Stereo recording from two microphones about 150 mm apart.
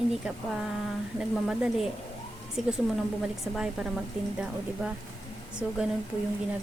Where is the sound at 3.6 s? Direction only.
5° right (ahead or behind).